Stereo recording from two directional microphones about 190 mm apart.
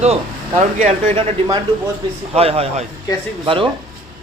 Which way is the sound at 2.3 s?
30° right (ahead or behind).